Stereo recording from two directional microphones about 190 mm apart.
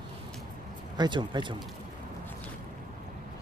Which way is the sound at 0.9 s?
25° right (ahead or behind).